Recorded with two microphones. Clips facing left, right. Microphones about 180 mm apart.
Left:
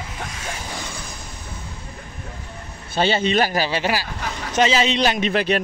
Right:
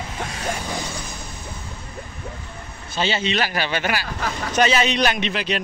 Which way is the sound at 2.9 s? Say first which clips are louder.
Left 4 dB; 55° left (ahead or behind).